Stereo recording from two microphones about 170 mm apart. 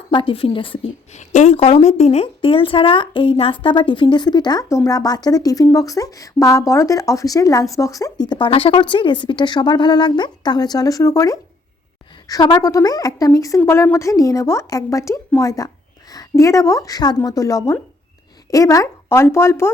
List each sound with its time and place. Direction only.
0.1 s a woman's voice: 30° left (ahead or behind)
8.3 s a woman's voice: 30° left (ahead or behind); by 19.7 s 15° left (ahead or behind)